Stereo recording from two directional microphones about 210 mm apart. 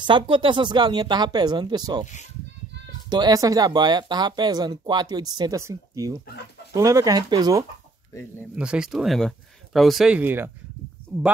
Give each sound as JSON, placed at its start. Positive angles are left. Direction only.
{"t": 0.0, "sound": "speech", "side_deg": -25}
{"t": 3.1, "sound": "speech", "side_deg": -20}
{"t": 8.1, "sound": "speech", "side_deg": 10}
{"t": 8.5, "sound": "speech", "side_deg": -5}